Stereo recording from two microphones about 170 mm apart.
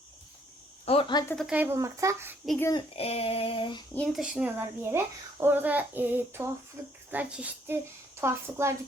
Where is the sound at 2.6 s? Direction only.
20° left (ahead or behind).